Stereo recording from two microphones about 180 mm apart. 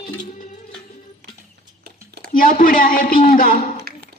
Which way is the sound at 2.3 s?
50° left (ahead or behind).